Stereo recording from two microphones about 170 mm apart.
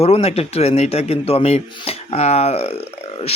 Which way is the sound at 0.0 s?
35° left (ahead or behind).